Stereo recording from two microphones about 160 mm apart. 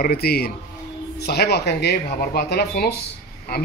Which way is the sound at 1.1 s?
90° left.